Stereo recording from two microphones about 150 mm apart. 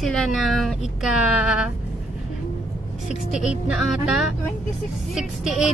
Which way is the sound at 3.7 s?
5° right (ahead or behind).